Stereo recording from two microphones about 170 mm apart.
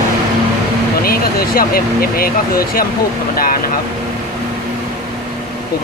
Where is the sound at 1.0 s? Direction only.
60° left (ahead or behind).